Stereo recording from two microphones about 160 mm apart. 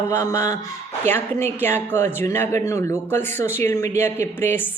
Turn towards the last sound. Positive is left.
turn(degrees=15)  # may be behind; listen again after turning